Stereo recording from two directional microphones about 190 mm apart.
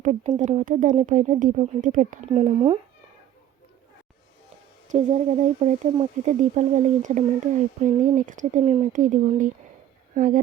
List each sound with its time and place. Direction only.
0.0 s speech: 40° right (ahead or behind)
4.9 s speech: 40° right (ahead or behind)